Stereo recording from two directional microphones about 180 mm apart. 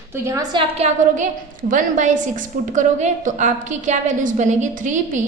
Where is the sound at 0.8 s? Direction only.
45° right (ahead or behind).